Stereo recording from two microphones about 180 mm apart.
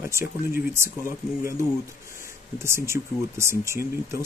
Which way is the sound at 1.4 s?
15° right (ahead or behind).